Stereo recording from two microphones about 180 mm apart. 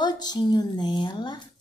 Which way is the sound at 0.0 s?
25° left (ahead or behind).